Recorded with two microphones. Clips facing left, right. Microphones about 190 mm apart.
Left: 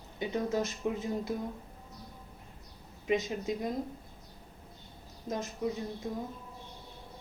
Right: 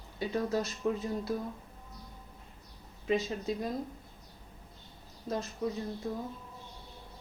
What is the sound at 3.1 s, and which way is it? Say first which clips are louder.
Speech: even; 15° left (ahead or behind).